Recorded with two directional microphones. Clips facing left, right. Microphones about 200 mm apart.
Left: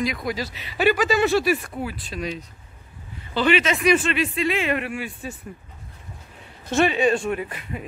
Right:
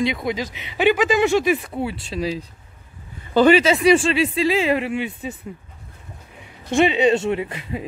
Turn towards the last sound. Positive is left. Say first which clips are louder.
# right 4 dB
turn(degrees=-25)  # may be behind; listen again after turning